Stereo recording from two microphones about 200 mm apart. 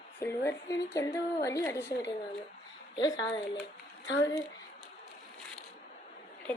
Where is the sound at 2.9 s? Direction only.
20° left (ahead or behind).